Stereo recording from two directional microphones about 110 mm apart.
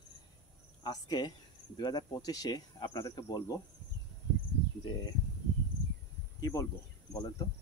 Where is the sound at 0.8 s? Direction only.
40° left (ahead or behind).